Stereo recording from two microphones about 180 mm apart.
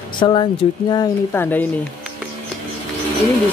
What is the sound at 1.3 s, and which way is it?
Speech, 10° left (ahead or behind).